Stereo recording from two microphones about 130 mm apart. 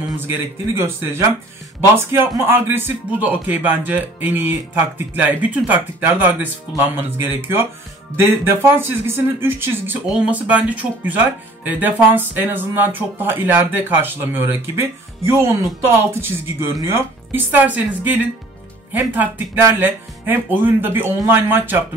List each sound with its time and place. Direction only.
0.3 s speech: 20° right (ahead or behind)
10.0 s speech: 5° right (ahead or behind)